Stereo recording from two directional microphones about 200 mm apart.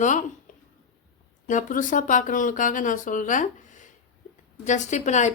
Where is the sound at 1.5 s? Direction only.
40° left (ahead or behind).